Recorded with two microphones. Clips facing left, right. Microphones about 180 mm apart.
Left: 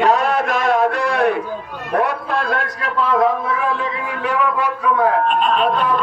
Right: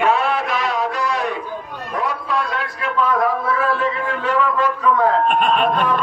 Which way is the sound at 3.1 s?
25° left (ahead or behind).